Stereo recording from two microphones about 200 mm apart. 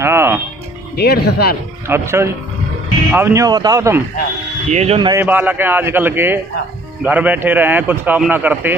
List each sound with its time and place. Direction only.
0.0 s music: 10° right (ahead or behind)
0.9 s speech: 55° left (ahead or behind)
1.9 s speech: 15° right (ahead or behind)
4.6 s speech: 30° right (ahead or behind)
5.1 s speech: 10° right (ahead or behind)